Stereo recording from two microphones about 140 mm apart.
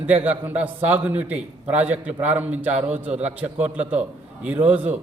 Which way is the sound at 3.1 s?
50° right (ahead or behind).